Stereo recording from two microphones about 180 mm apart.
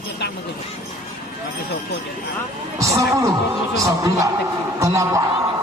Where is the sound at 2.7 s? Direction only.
15° right (ahead or behind).